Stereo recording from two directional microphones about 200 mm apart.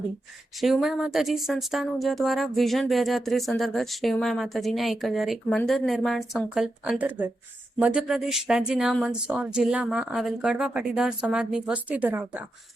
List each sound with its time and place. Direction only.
0.6 s speech: centre (ahead or behind)